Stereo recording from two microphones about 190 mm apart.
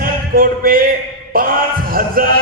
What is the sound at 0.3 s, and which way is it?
A man's voice, 50° right (ahead or behind).